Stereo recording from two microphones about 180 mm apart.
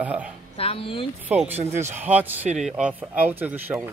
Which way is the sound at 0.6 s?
30° left (ahead or behind).